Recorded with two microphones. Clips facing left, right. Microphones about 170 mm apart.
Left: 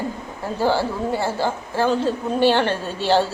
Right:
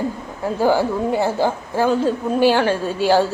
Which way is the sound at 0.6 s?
15° right (ahead or behind).